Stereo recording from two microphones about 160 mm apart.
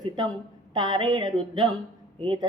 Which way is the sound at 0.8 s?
30° right (ahead or behind).